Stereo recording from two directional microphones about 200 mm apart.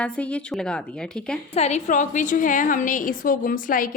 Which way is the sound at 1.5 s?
35° left (ahead or behind).